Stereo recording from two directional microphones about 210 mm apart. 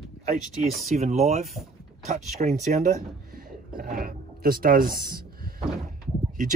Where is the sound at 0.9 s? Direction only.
30° right (ahead or behind).